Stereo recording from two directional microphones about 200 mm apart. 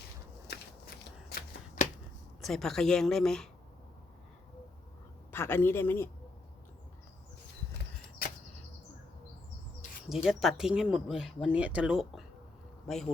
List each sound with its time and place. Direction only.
0.4 s shuffling cards: 55° left (ahead or behind)
2.4 s speech: centre (ahead or behind)
5.3 s speech: 10° left (ahead or behind)
10.1 s speech: centre (ahead or behind)